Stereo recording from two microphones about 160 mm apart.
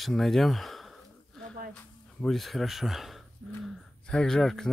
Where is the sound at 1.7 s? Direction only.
Centre (ahead or behind).